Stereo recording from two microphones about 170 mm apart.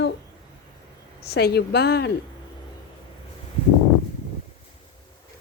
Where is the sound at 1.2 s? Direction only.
70° left (ahead or behind).